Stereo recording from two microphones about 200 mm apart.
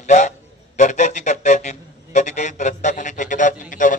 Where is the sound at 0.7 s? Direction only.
35° left (ahead or behind).